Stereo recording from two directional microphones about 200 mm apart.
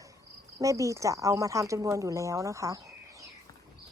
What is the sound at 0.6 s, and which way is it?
A woman's voice, 15° right (ahead or behind).